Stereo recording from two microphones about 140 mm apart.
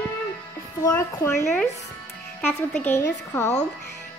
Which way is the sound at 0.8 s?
20° left (ahead or behind).